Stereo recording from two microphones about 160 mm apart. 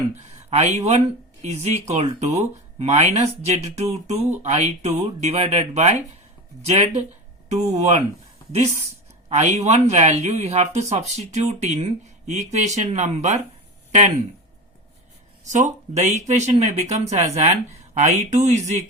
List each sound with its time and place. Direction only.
0.5 s speech: 45° right (ahead or behind)
9.3 s speech: 45° right (ahead or behind)
15.4 s speech: 50° right (ahead or behind)